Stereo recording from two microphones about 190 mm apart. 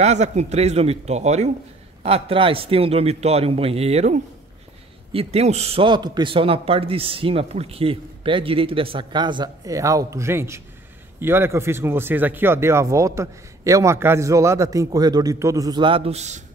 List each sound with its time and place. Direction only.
0.0 s a man's voice: 35° right (ahead or behind)